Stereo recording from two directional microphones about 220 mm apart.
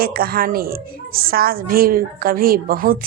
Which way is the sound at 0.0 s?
45° right (ahead or behind).